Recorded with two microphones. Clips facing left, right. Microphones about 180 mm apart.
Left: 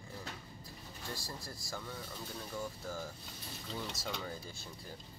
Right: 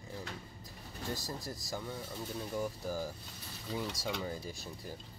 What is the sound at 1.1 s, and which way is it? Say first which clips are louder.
Speech: right 5 dB; 20° right (ahead or behind).